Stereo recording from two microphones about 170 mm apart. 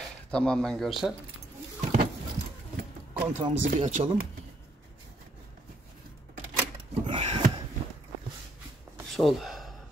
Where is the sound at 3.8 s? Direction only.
45° right (ahead or behind).